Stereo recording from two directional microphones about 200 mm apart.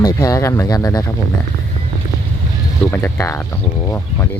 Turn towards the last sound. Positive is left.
turn(degrees=15)  # may be behind; listen again after turning